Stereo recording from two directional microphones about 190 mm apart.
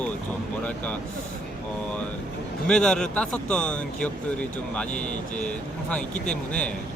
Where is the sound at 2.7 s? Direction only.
5° left (ahead or behind).